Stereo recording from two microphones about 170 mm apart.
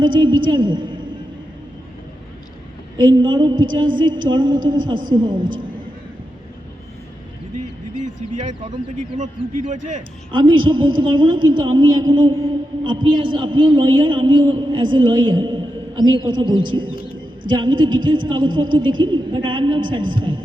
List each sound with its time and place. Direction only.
0.0 s a man's voice: 30° right (ahead or behind)
3.0 s a man's voice: 25° right (ahead or behind)
8.0 s speech: 45° right (ahead or behind)
10.3 s a man's voice: 30° right (ahead or behind)